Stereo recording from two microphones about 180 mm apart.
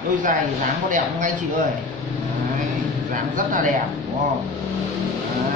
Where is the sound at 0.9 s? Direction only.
45° right (ahead or behind).